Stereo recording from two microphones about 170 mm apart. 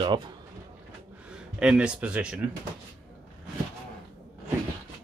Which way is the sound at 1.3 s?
5° right (ahead or behind).